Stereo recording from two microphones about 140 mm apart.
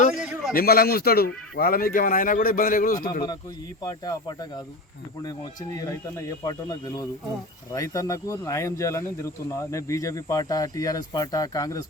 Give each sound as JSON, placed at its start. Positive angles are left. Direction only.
{"t": 0.2, "sound": "a sound", "side_deg": -5}
{"t": 0.5, "sound": "a man's voice", "side_deg": 90}
{"t": 3.8, "sound": "speech", "side_deg": 25}